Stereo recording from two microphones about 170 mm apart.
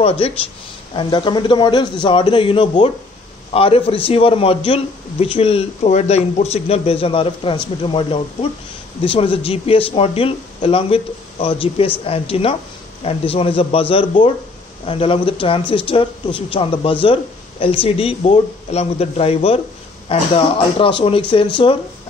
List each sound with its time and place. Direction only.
0.2 s a man's voice: 35° left (ahead or behind)